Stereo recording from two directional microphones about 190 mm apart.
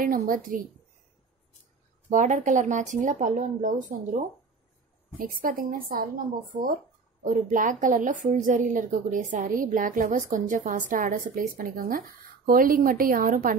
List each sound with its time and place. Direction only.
0.0 s a woman's voice: 45° right (ahead or behind)
2.0 s speech: 40° right (ahead or behind)
5.4 s a woman's voice: 45° right (ahead or behind)
7.2 s a woman's voice: 45° right (ahead or behind)